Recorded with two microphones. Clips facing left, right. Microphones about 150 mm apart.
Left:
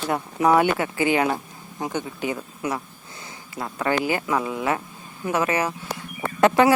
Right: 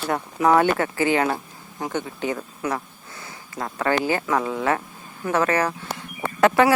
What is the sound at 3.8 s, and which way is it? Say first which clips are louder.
Speech: right 1 dB; 15° left (ahead or behind).